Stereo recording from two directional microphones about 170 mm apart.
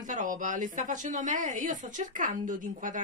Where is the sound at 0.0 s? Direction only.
50° right (ahead or behind).